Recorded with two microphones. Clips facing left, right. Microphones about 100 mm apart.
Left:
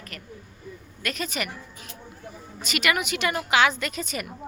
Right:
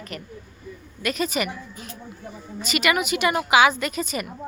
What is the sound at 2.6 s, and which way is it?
A woman's voice, centre (ahead or behind).